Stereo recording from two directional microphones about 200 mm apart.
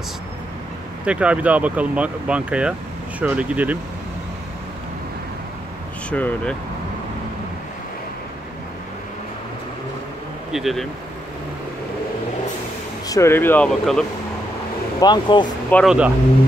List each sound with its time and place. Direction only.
1.0 s speech: 5° right (ahead or behind)
6.0 s speech: 5° left (ahead or behind)
10.5 s speech: centre (ahead or behind)
13.1 s speech: 10° left (ahead or behind)
15.0 s speech: 20° left (ahead or behind)
15.7 s speech: centre (ahead or behind)